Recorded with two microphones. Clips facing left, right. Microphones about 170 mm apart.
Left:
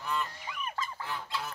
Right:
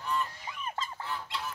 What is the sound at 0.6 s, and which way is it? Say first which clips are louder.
Fowl: even; 25° right (ahead or behind).